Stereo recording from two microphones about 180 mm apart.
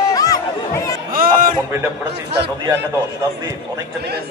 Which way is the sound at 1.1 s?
50° right (ahead or behind).